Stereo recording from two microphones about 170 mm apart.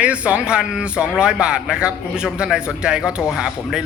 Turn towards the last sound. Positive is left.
turn(degrees=-5)  # may be behind; listen again after turning